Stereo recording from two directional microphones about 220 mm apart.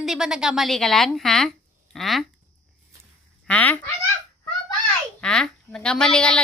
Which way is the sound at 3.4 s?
5° left (ahead or behind).